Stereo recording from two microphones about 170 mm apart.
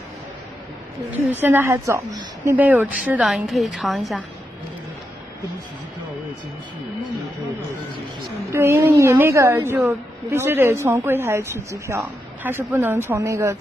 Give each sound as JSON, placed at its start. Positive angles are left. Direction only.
{"t": 1.3, "sound": "a woman's voice", "side_deg": -10}
{"t": 8.5, "sound": "a woman's voice", "side_deg": -15}